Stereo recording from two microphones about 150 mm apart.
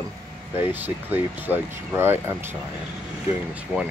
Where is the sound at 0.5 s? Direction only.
15° right (ahead or behind).